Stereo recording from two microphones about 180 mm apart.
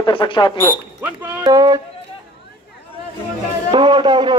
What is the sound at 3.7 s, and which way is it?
Speech, 25° right (ahead or behind).